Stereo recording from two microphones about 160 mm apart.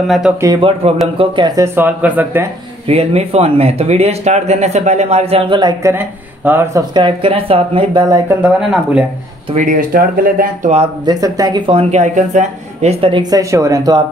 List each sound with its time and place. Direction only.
0.3 s speech: 5° right (ahead or behind)
0.6 s speech: 35° right (ahead or behind)
1.6 s speech: 10° right (ahead or behind)
2.9 s speech: 40° right (ahead or behind); by 6.8 s 15° right (ahead or behind)
6.9 s speech: 30° right (ahead or behind)
8.4 s speech: 5° right (ahead or behind)
9.6 s speech: 55° right (ahead or behind)
11.1 s speech: 20° right (ahead or behind)
11.9 s speech: 45° right (ahead or behind); by 14.0 s 20° right (ahead or behind)